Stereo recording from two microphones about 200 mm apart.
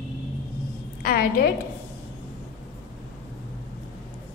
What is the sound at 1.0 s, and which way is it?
Speech, 50° left (ahead or behind).